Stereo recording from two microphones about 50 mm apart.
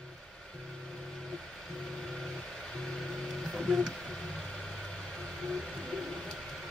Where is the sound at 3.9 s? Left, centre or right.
Centre.